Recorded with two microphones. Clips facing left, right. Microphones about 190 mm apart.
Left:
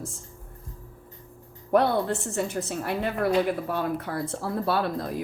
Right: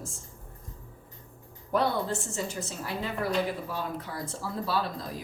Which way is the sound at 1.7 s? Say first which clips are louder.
Left 5 dB; 60° left (ahead or behind).